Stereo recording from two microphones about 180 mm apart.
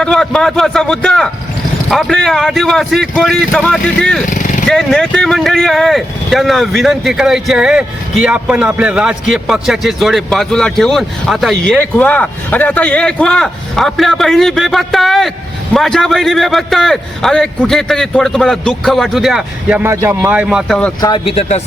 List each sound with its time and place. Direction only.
0.0 s speech: 5° left (ahead or behind)
4.3 s vehicle: 45° left (ahead or behind)
4.7 s speech: 5° left (ahead or behind)
21.0 s speech: 25° left (ahead or behind)